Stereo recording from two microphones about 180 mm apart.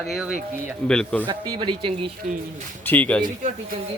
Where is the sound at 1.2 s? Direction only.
25° right (ahead or behind).